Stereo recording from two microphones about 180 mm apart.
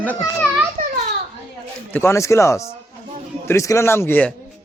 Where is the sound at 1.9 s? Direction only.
10° left (ahead or behind).